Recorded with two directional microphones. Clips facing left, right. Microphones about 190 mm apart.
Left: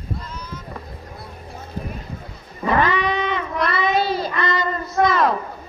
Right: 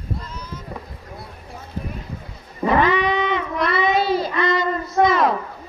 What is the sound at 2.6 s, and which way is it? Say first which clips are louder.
Child singing: right 2 dB; 20° right (ahead or behind).